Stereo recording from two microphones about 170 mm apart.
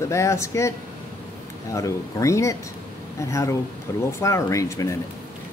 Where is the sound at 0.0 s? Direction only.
15° left (ahead or behind).